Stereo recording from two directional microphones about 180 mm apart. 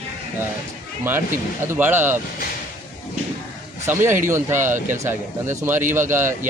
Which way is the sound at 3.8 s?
15° right (ahead or behind).